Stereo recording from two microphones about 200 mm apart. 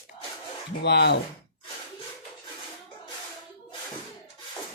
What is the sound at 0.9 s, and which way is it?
Speech, 60° left (ahead or behind).